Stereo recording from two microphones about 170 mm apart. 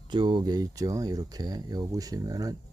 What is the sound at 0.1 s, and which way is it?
Speech, 25° right (ahead or behind).